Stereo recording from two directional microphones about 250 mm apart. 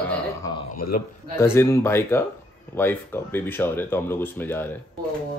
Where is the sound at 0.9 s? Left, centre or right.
Left.